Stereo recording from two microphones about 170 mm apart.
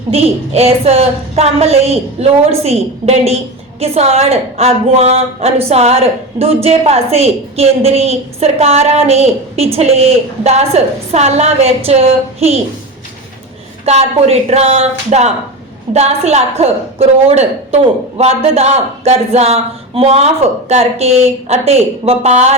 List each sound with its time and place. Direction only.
0.1 s a woman's voice: 35° right (ahead or behind)
13.8 s a woman's voice: 40° right (ahead or behind)